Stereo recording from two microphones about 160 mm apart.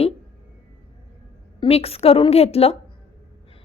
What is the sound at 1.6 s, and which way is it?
A woman's voice, 40° left (ahead or behind).